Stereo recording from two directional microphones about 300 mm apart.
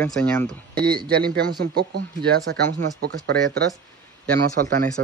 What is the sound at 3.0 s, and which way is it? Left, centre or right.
A man's voice, right.